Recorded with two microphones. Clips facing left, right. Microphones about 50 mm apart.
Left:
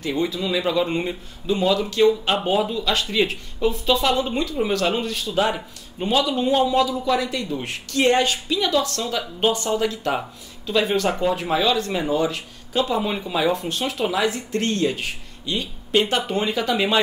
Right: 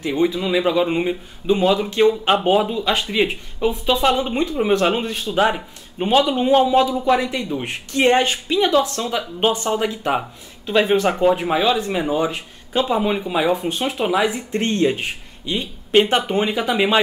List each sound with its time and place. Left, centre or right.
0.0 s speech: centre